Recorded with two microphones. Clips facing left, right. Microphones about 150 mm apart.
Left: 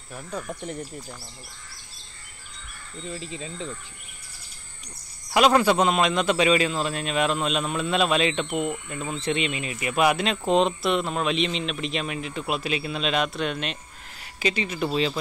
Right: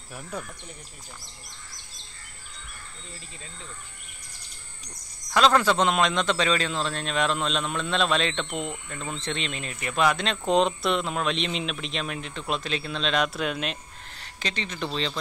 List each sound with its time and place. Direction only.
3.1 s speech: 90° left
5.3 s a man's voice: 10° left (ahead or behind)
14.2 s speech: 10° left (ahead or behind)